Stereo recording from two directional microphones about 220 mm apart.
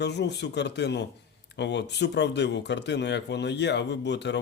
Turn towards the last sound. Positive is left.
turn(degrees=50)  # may be behind; listen again after turning